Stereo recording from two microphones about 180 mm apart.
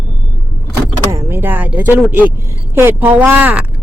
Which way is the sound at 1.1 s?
15° right (ahead or behind).